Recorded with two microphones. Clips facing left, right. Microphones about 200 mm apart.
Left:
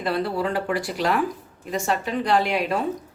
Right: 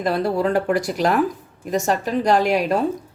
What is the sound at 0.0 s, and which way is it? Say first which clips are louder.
Speech: right 4 dB; 45° right (ahead or behind).